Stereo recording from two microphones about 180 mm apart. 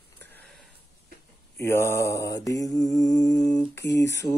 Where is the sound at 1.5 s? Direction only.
15° left (ahead or behind).